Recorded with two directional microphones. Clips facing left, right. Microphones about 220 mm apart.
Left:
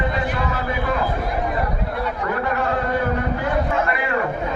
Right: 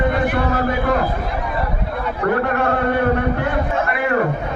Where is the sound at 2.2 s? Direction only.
60° right (ahead or behind).